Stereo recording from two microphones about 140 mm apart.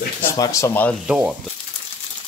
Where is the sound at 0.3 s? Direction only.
20° left (ahead or behind).